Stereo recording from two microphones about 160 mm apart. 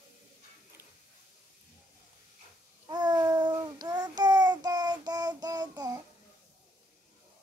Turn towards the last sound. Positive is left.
turn(degrees=-25)  # may be behind; listen again after turning